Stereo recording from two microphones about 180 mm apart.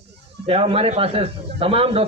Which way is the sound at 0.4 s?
35° right (ahead or behind).